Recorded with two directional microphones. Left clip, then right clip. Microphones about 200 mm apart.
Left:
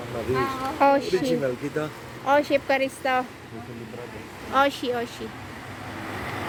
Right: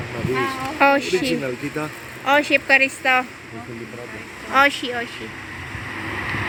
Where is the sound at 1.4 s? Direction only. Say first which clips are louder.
Right 1 dB; 30° right (ahead or behind).